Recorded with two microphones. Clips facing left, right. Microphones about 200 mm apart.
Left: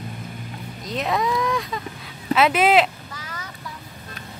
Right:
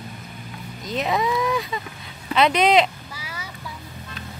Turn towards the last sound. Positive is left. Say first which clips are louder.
# even
turn(degrees=-10)  # may be behind; listen again after turning